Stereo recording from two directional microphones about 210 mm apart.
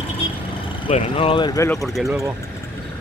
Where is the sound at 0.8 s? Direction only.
30° left (ahead or behind).